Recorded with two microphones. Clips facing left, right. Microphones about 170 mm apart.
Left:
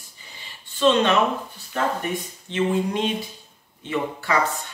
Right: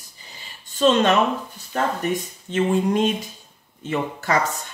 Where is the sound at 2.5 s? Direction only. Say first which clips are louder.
Right 3 dB; 45° right (ahead or behind).